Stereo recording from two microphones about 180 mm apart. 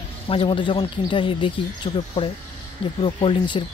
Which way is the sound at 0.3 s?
30° left (ahead or behind).